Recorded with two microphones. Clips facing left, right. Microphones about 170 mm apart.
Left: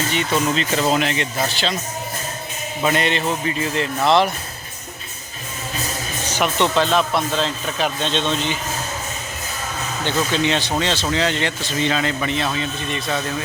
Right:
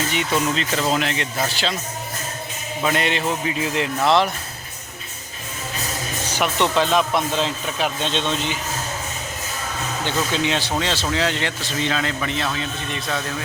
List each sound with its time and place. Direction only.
0.1 s speech: 5° right (ahead or behind)
2.8 s speech: 5° right (ahead or behind)
6.4 s speech: 10° right (ahead or behind)
10.0 s speech: 10° right (ahead or behind)